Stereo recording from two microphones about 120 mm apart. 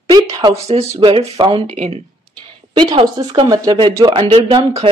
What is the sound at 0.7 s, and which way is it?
Speech, 60° right (ahead or behind).